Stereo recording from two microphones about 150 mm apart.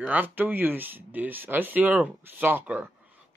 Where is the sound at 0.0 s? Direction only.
10° right (ahead or behind).